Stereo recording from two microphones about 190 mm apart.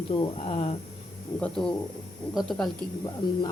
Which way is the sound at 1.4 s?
5° left (ahead or behind).